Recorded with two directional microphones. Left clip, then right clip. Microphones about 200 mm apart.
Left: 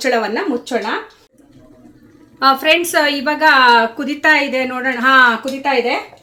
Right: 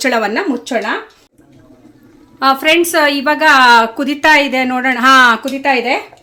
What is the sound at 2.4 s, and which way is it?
A woman's voice, 20° right (ahead or behind).